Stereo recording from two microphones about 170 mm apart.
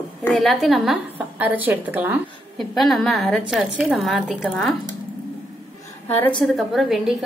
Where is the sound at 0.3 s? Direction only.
Centre (ahead or behind).